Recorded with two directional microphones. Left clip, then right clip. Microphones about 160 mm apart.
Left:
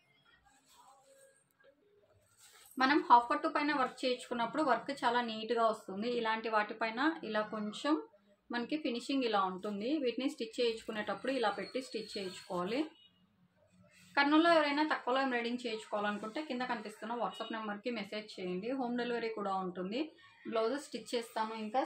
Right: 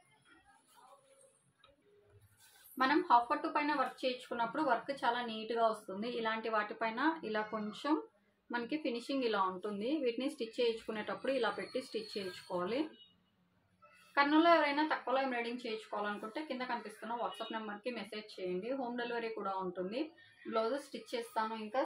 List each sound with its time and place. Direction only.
2.8 s a woman's voice: 35° left (ahead or behind); by 12.8 s 20° left (ahead or behind)
14.1 s a woman's voice: 25° left (ahead or behind)